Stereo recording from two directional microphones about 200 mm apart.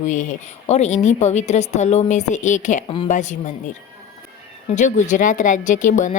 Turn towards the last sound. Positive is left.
turn(degrees=40)  # may be behind; listen again after turning